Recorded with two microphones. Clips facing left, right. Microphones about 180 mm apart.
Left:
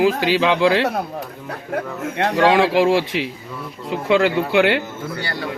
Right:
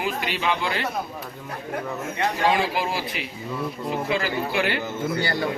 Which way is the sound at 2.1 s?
70° left (ahead or behind).